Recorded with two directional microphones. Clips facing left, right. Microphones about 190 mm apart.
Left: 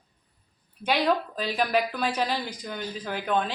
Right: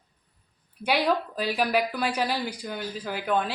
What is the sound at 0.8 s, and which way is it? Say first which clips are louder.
Speech: even; 10° right (ahead or behind).